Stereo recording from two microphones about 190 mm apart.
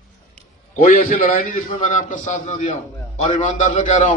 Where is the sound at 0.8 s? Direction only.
45° left (ahead or behind).